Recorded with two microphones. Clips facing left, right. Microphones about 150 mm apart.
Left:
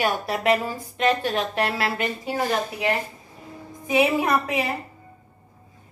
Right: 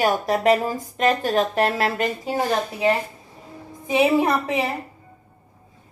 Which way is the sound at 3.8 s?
25° right (ahead or behind).